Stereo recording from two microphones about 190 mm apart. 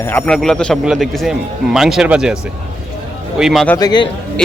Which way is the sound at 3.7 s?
20° left (ahead or behind).